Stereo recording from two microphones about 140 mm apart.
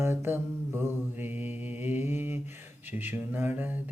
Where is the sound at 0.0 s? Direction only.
15° right (ahead or behind).